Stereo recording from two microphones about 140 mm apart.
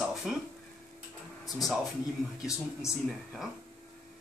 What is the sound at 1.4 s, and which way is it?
Speech, centre (ahead or behind).